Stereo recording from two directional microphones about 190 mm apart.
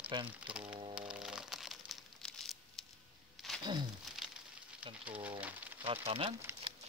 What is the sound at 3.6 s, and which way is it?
Wild animals, 25° right (ahead or behind).